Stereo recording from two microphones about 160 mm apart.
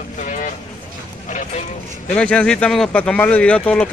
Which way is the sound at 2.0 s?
5° left (ahead or behind).